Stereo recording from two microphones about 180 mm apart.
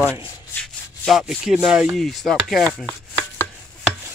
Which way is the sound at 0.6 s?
Centre (ahead or behind).